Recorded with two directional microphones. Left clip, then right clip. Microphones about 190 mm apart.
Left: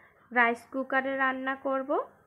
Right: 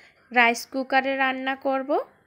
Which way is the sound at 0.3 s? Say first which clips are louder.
Right 5 dB; 30° right (ahead or behind).